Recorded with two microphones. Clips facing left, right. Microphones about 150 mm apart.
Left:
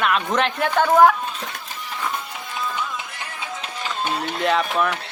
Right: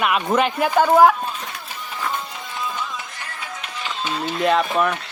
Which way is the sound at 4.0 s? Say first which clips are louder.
Even; 55° left (ahead or behind).